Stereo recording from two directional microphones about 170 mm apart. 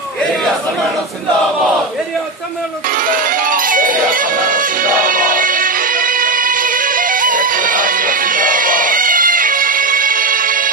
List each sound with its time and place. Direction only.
3.0 s music: 55° right (ahead or behind)